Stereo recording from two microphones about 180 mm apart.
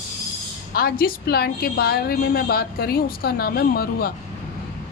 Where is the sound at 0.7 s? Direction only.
55° left (ahead or behind).